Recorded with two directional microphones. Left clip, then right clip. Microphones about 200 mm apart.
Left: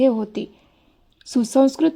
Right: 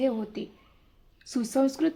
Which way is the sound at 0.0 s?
30° left (ahead or behind).